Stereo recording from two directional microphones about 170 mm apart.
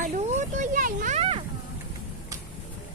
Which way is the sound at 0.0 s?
40° right (ahead or behind).